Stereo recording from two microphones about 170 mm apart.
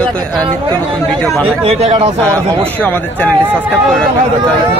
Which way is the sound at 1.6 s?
35° right (ahead or behind).